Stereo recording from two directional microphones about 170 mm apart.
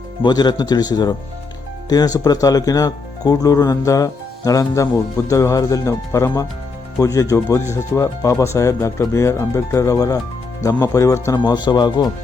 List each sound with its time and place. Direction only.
0.2 s speech: 25° left (ahead or behind)